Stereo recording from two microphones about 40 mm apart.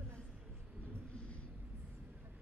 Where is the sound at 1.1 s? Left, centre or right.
Left.